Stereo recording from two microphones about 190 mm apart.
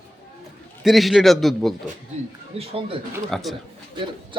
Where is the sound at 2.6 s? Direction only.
30° right (ahead or behind).